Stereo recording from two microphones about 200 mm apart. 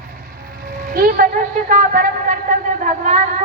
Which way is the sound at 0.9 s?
45° right (ahead or behind).